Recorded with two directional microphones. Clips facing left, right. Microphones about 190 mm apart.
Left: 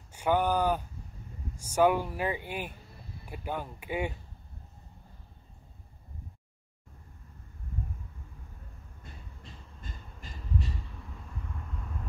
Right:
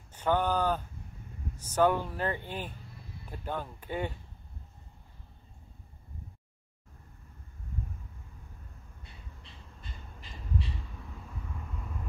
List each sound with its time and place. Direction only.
0.1 s speech: 10° left (ahead or behind)
9.0 s crow: 45° left (ahead or behind)